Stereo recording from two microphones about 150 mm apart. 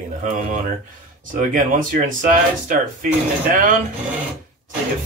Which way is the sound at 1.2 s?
60° right (ahead or behind).